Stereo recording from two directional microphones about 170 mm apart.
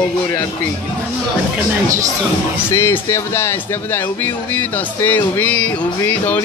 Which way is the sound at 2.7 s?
15° left (ahead or behind).